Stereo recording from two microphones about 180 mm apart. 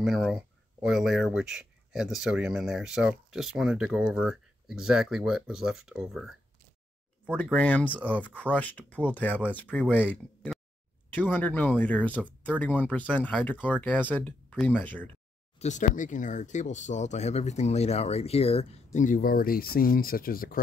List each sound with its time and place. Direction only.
0.0 s speech: centre (ahead or behind)
7.5 s speech: 10° left (ahead or behind)
7.9 s speech: 10° right (ahead or behind)
8.4 s speech: 10° left (ahead or behind)
15.6 s speech: 45° left (ahead or behind)